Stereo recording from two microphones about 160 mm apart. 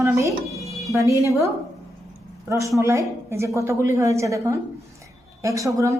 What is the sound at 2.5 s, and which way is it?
A woman's voice, 20° right (ahead or behind).